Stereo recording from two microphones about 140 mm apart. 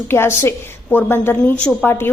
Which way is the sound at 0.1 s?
15° left (ahead or behind).